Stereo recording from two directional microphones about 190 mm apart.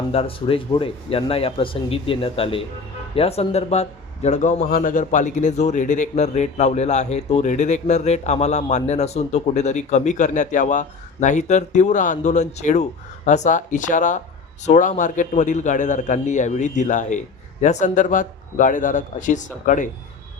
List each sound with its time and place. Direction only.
0.1 s speech: 30° left (ahead or behind)